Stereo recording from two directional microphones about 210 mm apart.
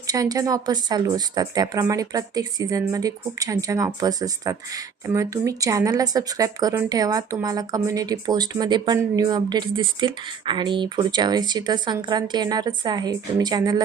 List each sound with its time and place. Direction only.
0.1 s a woman's voice: 15° right (ahead or behind)